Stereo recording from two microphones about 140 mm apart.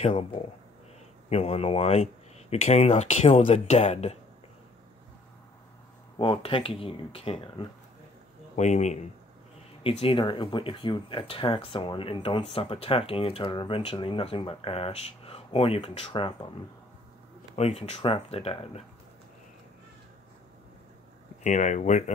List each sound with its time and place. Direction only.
0.0 s speech: 45° left (ahead or behind)
1.3 s speech: 45° left (ahead or behind)
6.1 s speech: 40° left (ahead or behind)
8.5 s speech: 55° left (ahead or behind)
9.8 s speech: 40° left (ahead or behind)
17.6 s speech: 50° left (ahead or behind)
21.4 s speech: 60° left (ahead or behind)